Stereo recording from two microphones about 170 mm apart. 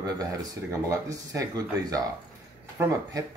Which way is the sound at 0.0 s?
20° right (ahead or behind).